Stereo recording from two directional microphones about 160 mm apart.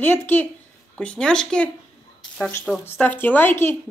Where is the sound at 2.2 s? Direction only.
5° left (ahead or behind).